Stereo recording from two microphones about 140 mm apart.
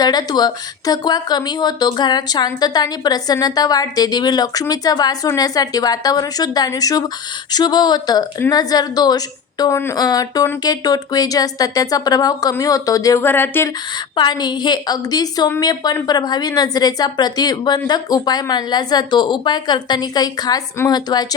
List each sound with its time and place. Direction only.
0.0 s a woman's voice: 30° left (ahead or behind)
14.2 s a woman's voice: 30° left (ahead or behind)